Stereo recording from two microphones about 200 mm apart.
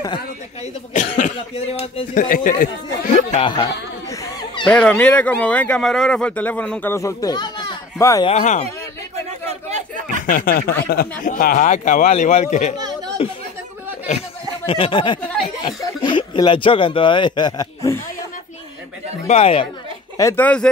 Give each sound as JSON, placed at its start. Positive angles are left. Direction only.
{"t": 1.1, "sound": "a man's voice", "side_deg": 35}
{"t": 2.2, "sound": "a man's voice", "side_deg": 45}
{"t": 4.1, "sound": "a sound", "side_deg": 15}
{"t": 4.6, "sound": "speech", "side_deg": 5}
{"t": 8.3, "sound": "a man's voice", "side_deg": 35}
{"t": 10.2, "sound": "a man's voice", "side_deg": 45}
{"t": 12.7, "sound": "chatter", "side_deg": -20}
{"t": 14.7, "sound": "speech", "side_deg": 25}
{"t": 19.2, "sound": "speech", "side_deg": 30}
{"t": 20.2, "sound": "speech", "side_deg": 10}